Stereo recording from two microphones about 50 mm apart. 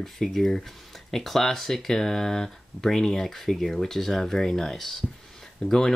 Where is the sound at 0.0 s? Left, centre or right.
Centre.